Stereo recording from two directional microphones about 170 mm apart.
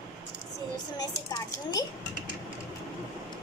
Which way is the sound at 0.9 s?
20° left (ahead or behind).